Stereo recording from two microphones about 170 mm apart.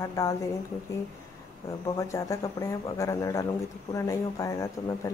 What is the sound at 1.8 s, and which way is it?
A woman's voice, 20° left (ahead or behind).